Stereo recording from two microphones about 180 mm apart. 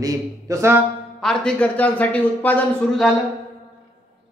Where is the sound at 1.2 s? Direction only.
5° left (ahead or behind).